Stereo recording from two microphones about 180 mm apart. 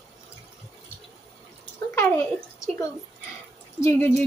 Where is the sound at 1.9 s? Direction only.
10° left (ahead or behind).